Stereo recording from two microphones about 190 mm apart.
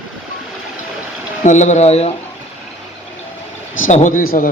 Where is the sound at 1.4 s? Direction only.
40° left (ahead or behind).